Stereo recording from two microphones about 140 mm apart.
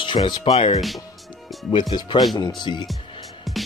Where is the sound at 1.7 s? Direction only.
35° left (ahead or behind).